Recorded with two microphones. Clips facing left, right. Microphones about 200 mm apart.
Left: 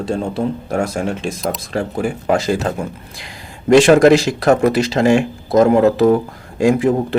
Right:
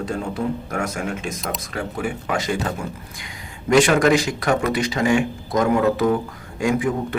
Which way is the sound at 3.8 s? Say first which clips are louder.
Left 7 dB; 35° left (ahead or behind).